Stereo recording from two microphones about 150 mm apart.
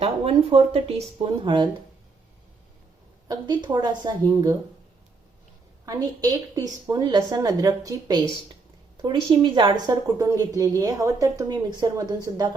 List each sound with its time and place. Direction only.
0.0 s speech: 40° right (ahead or behind)
3.2 s a woman's voice: 30° right (ahead or behind)
5.8 s a woman's voice: 25° right (ahead or behind)